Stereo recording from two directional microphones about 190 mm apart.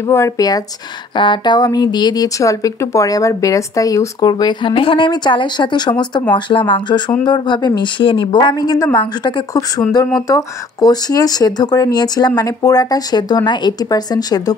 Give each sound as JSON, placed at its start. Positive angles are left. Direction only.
{"t": 0.0, "sound": "speech", "side_deg": 15}